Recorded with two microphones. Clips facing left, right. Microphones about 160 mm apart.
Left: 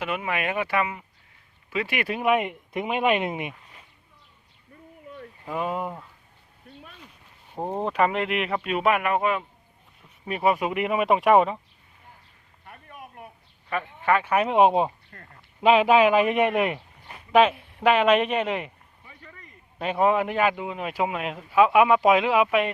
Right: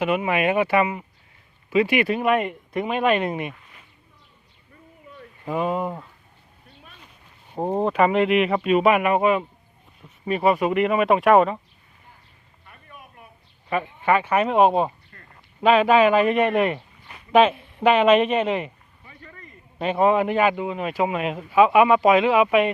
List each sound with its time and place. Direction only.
0.0 s speech: 15° right (ahead or behind)
2.0 s speech: 10° left (ahead or behind)
5.5 s speech: centre (ahead or behind)
7.5 s speech: 15° right (ahead or behind)
7.9 s speech: 5° right (ahead or behind)
10.2 s speech: 5° left (ahead or behind)
13.7 s speech: 10° right (ahead or behind)
14.3 s a man's voice: 10° left (ahead or behind)